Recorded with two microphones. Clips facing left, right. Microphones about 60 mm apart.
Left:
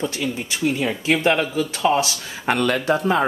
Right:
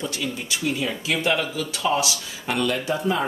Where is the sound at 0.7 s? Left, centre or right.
Left.